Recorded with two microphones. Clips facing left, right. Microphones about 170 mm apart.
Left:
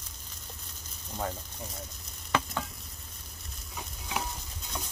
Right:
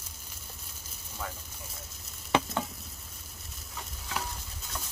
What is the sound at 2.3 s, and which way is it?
Frying, 20° right (ahead or behind).